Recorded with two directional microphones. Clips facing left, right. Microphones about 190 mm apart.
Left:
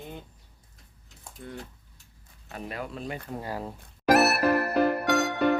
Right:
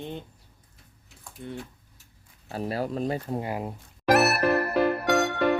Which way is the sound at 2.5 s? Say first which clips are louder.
Right 7 dB; 35° right (ahead or behind).